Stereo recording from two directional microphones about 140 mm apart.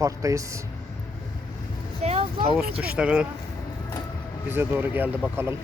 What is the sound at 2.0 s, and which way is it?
Vehicle, 45° right (ahead or behind).